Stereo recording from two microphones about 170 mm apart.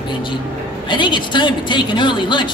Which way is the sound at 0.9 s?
30° left (ahead or behind).